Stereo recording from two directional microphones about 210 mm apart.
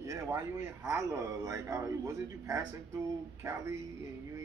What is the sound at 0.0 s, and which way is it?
A man's voice, 15° right (ahead or behind).